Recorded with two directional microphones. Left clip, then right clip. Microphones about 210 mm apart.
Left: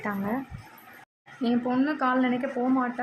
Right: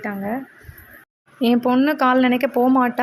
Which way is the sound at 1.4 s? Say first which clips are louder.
Right 9 dB; 40° right (ahead or behind).